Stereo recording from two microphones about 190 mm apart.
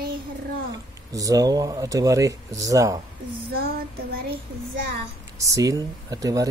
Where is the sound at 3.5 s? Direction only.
55° right (ahead or behind).